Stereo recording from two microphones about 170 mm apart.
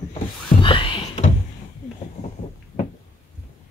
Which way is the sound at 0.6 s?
30° left (ahead or behind).